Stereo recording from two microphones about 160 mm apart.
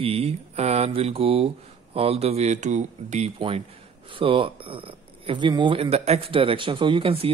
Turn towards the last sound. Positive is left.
turn(degrees=-35)  # may be behind; listen again after turning